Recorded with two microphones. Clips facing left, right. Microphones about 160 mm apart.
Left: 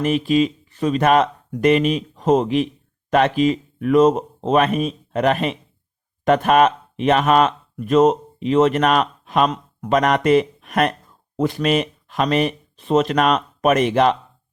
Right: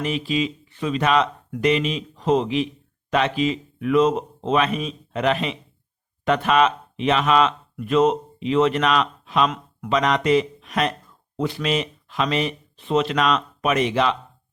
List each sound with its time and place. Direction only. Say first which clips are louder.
0.0 s speech: left 6 dB; 50° left (ahead or behind)